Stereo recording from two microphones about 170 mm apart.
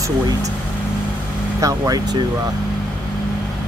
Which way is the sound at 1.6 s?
20° right (ahead or behind).